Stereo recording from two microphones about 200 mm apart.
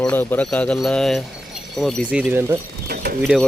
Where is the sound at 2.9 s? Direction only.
50° right (ahead or behind).